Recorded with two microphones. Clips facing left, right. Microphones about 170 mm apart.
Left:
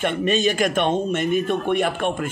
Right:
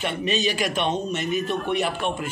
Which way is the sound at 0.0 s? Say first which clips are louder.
Left 4 dB; 50° left (ahead or behind).